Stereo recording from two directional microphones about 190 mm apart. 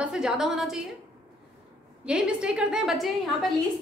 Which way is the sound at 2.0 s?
5° right (ahead or behind).